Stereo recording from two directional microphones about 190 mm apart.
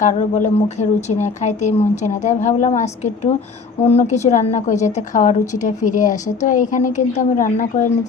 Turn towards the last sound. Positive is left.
turn(degrees=40)  # may be behind; listen again after turning